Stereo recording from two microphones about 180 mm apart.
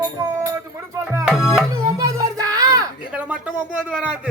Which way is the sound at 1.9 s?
20° right (ahead or behind).